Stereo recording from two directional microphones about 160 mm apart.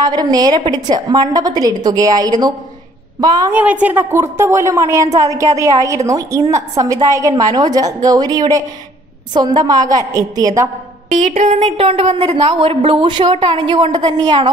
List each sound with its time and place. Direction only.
0.0 s a woman's voice: 25° right (ahead or behind)
11.1 s speech: 50° right (ahead or behind)
11.5 s a woman's voice: 35° right (ahead or behind)